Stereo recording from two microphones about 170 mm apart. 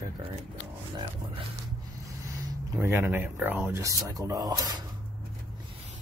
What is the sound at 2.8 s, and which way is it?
Speech, 15° right (ahead or behind).